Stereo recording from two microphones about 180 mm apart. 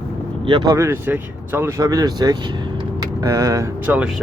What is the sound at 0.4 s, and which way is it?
Speech, 30° right (ahead or behind).